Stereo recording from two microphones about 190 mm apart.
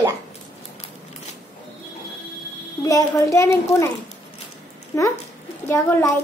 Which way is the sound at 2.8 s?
15° left (ahead or behind).